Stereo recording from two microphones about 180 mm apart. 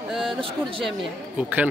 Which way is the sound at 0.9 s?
5° right (ahead or behind).